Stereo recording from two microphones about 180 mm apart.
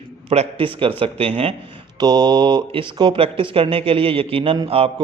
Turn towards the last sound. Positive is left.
turn(degrees=-30)  # may be behind; listen again after turning